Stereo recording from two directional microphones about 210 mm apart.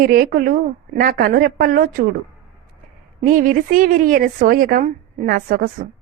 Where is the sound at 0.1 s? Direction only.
45° right (ahead or behind).